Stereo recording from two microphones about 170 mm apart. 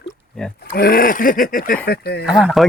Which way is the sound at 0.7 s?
60° left (ahead or behind).